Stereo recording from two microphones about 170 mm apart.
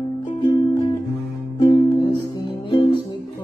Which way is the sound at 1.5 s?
30° left (ahead or behind).